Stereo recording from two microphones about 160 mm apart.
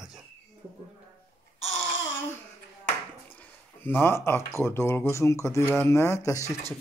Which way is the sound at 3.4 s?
15° left (ahead or behind).